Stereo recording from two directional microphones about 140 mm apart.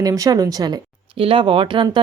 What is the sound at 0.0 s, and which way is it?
Speech, 25° right (ahead or behind).